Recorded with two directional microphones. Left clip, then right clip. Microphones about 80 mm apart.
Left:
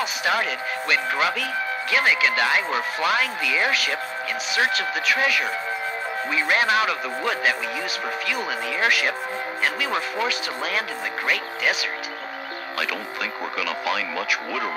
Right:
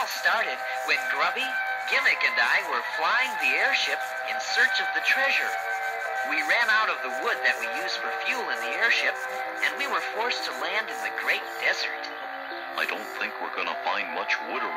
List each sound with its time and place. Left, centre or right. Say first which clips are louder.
0.0 s speech: left 3 dB; left